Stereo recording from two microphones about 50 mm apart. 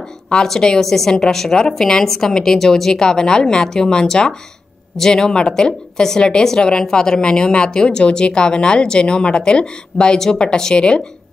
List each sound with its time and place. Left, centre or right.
0.3 s a woman's voice: centre